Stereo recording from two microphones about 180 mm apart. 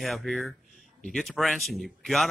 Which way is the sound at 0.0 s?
Centre (ahead or behind).